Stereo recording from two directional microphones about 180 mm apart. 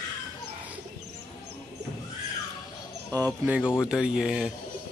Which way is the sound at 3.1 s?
20° right (ahead or behind).